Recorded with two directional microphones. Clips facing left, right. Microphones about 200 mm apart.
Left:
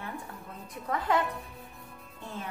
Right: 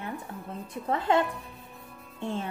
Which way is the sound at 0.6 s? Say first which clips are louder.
Right 3 dB; 25° right (ahead or behind).